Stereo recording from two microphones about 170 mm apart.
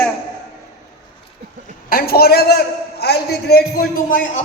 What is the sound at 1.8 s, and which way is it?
A man's voice, 60° left (ahead or behind).